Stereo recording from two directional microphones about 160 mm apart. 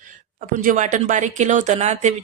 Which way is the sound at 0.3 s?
55° right (ahead or behind).